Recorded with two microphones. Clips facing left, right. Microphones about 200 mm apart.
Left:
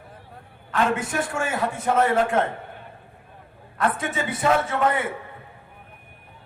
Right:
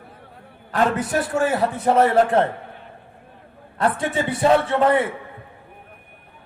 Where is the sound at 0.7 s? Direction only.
35° right (ahead or behind).